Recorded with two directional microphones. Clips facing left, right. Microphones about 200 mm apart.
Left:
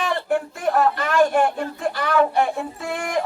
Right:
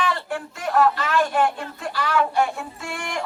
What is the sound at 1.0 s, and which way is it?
Speech, 50° left (ahead or behind).